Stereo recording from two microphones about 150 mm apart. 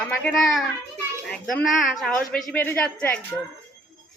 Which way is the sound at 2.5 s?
15° left (ahead or behind).